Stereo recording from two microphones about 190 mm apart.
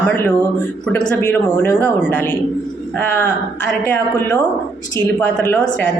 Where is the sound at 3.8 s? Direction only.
10° left (ahead or behind).